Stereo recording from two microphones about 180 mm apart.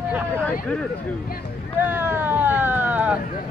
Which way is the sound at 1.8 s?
10° right (ahead or behind).